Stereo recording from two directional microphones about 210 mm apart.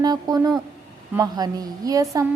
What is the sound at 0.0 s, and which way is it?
A woman's voice, 20° right (ahead or behind).